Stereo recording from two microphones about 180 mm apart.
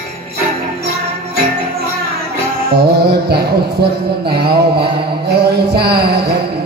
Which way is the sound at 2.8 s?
65° right (ahead or behind).